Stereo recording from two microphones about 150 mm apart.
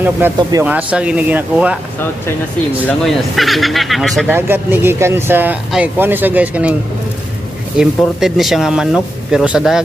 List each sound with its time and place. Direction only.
0.4 s speech: 25° right (ahead or behind)
0.7 s speech: 10° right (ahead or behind)
3.0 s speech: centre (ahead or behind)
4.3 s speech: 15° right (ahead or behind)
7.8 s speech: 5° right (ahead or behind)